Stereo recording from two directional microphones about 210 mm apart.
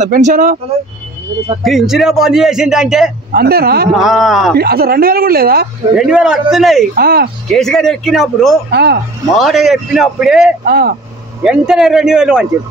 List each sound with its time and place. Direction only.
0.0 s speech: 40° right (ahead or behind)
1.6 s speech: centre (ahead or behind)
3.3 s speech: 45° right (ahead or behind)
3.9 s speech: centre (ahead or behind)
4.6 s speech: 50° right (ahead or behind)
5.9 s speech: 5° right (ahead or behind)
7.0 s speech: 45° right (ahead or behind)
7.5 s speech: centre (ahead or behind)
8.7 s speech: 50° right (ahead or behind)
9.4 s speech: centre (ahead or behind)
10.7 s speech: 45° right (ahead or behind)
11.4 s speech: 5° right (ahead or behind)